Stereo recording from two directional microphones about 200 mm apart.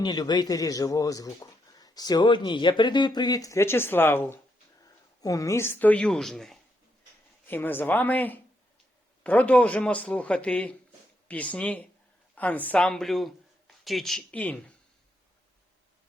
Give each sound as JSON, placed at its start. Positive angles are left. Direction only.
{"t": 0.0, "sound": "a man's voice", "side_deg": 20}